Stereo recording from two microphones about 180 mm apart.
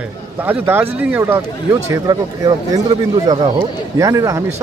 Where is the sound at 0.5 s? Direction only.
10° right (ahead or behind).